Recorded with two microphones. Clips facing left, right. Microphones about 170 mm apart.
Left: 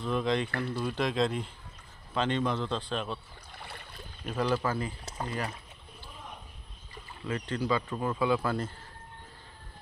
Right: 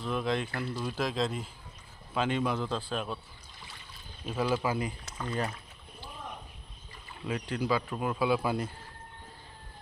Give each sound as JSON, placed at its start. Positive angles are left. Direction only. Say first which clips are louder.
{"t": 0.0, "sound": "speech", "louder": "left 2 dB", "side_deg": -5}
{"t": 3.5, "sound": "boat", "louder": "left 7 dB", "side_deg": 60}
{"t": 4.3, "sound": "speech", "louder": "even", "side_deg": -5}
{"t": 5.0, "sound": "pour", "louder": "left 1 dB", "side_deg": 35}
{"t": 7.2, "sound": "speech", "louder": "even", "side_deg": -10}